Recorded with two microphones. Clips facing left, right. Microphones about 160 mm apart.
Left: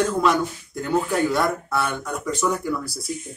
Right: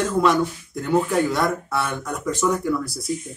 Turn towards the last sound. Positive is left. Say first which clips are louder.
# right 3 dB
turn(degrees=0)  # may be behind; listen again after turning